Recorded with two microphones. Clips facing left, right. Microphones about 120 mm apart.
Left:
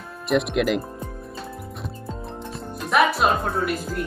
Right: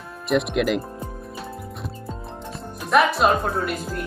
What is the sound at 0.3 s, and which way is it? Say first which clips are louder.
Speech: even; centre (ahead or behind).